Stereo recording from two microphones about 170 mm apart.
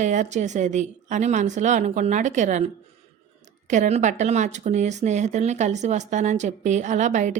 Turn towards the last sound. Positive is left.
turn(degrees=-45)  # may be behind; listen again after turning